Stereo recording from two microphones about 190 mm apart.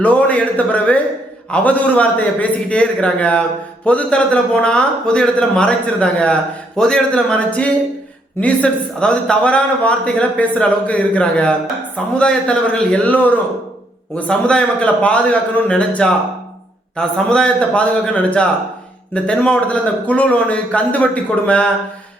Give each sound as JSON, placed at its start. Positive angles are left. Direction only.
{"t": 0.0, "sound": "a man's voice", "side_deg": 5}